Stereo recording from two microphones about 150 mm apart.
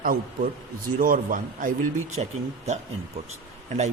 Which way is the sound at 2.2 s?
45° right (ahead or behind).